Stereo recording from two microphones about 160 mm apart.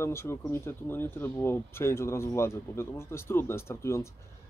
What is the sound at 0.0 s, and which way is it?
Speech, 15° left (ahead or behind).